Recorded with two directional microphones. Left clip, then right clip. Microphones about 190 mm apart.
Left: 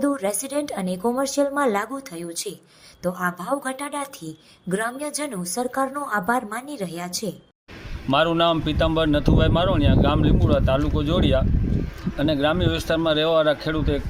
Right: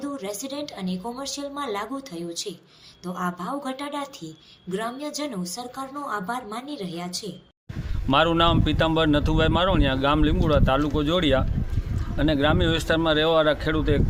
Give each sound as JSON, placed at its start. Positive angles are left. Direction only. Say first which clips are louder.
{"t": 0.0, "sound": "a woman's voice", "louder": "left 8 dB", "side_deg": 55}
{"t": 3.0, "sound": "a woman's voice", "louder": "left 4 dB", "side_deg": 60}
{"t": 8.1, "sound": "speech", "louder": "left 1 dB", "side_deg": -5}